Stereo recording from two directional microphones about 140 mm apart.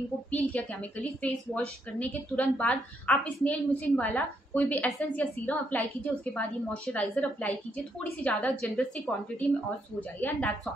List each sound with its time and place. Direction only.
0.3 s a woman's voice: 10° left (ahead or behind)
2.0 s a woman's voice: 10° left (ahead or behind)